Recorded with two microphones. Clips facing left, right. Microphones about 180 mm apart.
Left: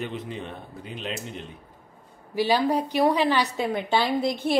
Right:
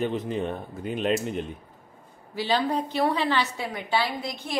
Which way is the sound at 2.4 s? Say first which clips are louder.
Left 3 dB; 10° left (ahead or behind).